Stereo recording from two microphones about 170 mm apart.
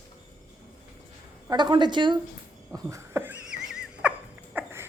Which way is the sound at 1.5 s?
25° right (ahead or behind).